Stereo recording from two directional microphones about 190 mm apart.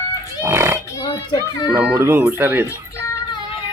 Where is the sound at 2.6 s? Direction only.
15° left (ahead or behind).